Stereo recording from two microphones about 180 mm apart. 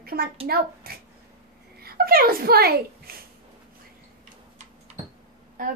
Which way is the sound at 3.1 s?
55° right (ahead or behind).